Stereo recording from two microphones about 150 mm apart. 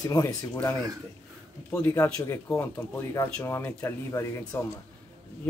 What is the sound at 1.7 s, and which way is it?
Speech, 15° left (ahead or behind).